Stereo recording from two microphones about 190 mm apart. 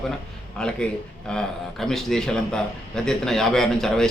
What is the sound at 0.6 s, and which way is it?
A man's voice, 5° left (ahead or behind).